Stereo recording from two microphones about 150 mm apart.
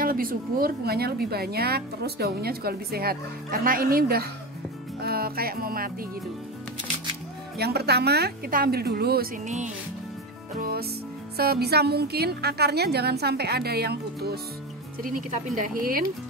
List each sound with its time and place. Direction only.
0.0 s speech: 70° right (ahead or behind); by 4.3 s 90° right
5.0 s music: 90° right
7.5 s speech: 90° right
10.6 s music: 90° right
11.3 s speech: 90° right
15.0 s a woman's voice: 65° right (ahead or behind)